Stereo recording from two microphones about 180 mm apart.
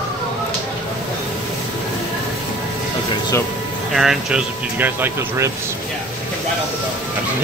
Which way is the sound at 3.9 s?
Centre (ahead or behind).